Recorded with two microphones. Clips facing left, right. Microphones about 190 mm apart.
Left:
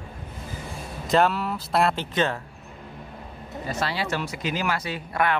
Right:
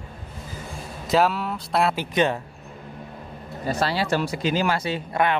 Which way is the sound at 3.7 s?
35° right (ahead or behind).